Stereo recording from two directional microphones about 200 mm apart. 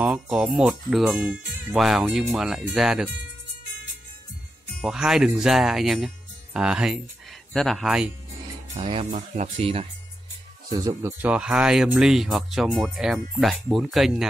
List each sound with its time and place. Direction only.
0.0 s speech: 5° right (ahead or behind)
4.8 s speech: centre (ahead or behind)
8.7 s speech: 25° right (ahead or behind)
9.1 s speech: 40° right (ahead or behind)
10.7 s speech: 20° right (ahead or behind); by 14.3 s centre (ahead or behind)